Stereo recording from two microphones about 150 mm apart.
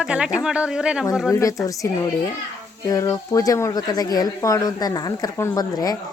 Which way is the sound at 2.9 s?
20° left (ahead or behind).